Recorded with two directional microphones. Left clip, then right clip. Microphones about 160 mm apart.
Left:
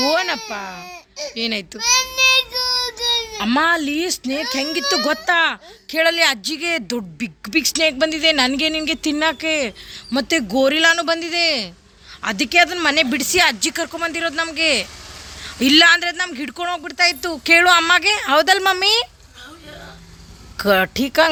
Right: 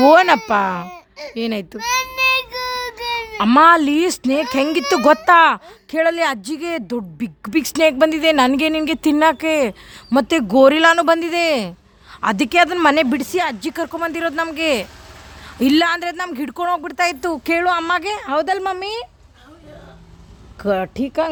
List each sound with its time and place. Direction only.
0.1 s baby cry: 75° right (ahead or behind)
0.5 s speech: 65° right (ahead or behind)
1.3 s a woman's voice: 45° right (ahead or behind)
1.8 s child singing: centre (ahead or behind)
3.3 s speech: 50° right (ahead or behind)
6.0 s speech: 35° right (ahead or behind)
6.8 s speech: 25° right (ahead or behind)
7.4 s a woman's voice: 45° right (ahead or behind)
13.1 s speech: 25° right (ahead or behind)
15.4 s speech: 25° right (ahead or behind)
17.6 s speech: 15° right (ahead or behind)
18.3 s a woman's voice: 10° right (ahead or behind)
20.6 s a woman's voice: 5° right (ahead or behind)